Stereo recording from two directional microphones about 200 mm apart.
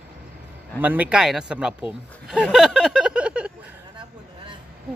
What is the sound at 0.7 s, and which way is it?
Speech, 10° right (ahead or behind).